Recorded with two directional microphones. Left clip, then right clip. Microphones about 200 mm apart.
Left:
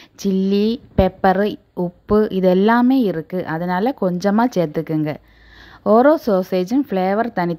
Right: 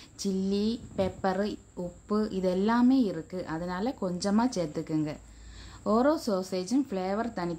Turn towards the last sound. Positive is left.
turn(degrees=35)  # may be behind; listen again after turning